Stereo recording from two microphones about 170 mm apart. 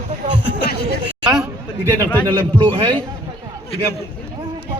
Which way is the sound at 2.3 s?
25° right (ahead or behind).